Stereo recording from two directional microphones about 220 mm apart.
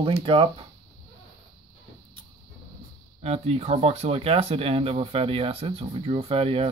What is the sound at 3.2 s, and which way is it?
Speech, 30° right (ahead or behind).